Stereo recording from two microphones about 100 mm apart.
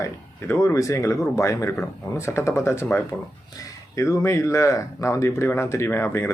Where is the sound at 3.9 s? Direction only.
30° left (ahead or behind).